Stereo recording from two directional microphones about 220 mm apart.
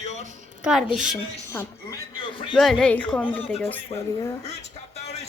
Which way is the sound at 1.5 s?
15° left (ahead or behind).